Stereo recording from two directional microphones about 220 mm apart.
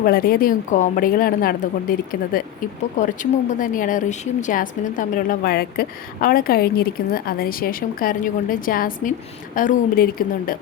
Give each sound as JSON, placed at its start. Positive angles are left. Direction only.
{"t": 0.0, "sound": "a woman's voice", "side_deg": 40}